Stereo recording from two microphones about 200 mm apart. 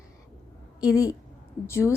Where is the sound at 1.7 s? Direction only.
15° left (ahead or behind).